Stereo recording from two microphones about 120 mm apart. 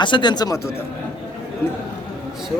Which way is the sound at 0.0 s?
40° left (ahead or behind).